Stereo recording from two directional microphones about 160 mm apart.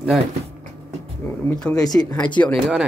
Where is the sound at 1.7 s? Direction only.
25° left (ahead or behind).